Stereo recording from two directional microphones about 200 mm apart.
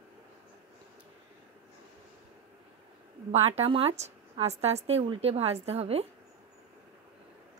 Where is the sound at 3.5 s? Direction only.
30° right (ahead or behind).